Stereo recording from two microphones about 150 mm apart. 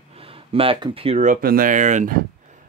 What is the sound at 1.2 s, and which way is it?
Speech, 70° right (ahead or behind).